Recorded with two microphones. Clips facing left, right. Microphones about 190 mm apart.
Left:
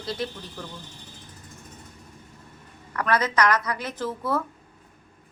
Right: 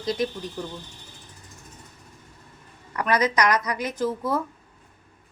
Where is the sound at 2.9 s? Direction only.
15° right (ahead or behind).